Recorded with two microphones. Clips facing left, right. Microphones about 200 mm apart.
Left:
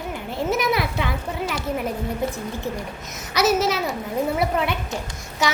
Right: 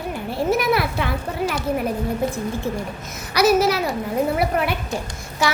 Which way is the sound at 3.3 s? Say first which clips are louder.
Right 3 dB; 20° left (ahead or behind).